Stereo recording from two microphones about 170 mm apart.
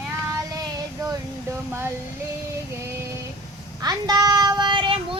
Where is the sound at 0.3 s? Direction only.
20° right (ahead or behind).